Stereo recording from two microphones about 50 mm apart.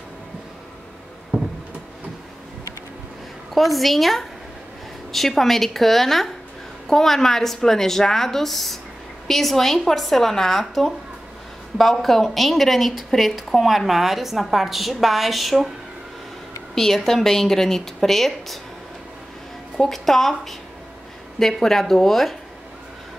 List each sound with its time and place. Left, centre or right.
1.3 s a sound: centre
3.5 s a woman's voice: centre
16.7 s a woman's voice: centre
19.8 s a woman's voice: centre